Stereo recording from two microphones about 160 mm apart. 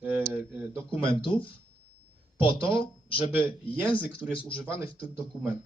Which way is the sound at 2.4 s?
30° left (ahead or behind).